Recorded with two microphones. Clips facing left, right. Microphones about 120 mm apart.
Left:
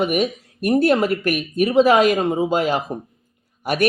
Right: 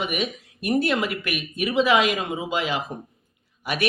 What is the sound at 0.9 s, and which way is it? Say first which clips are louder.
Speech: left 7 dB; 45° left (ahead or behind).